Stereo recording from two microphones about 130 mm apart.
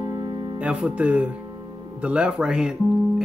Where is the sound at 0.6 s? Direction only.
10° right (ahead or behind).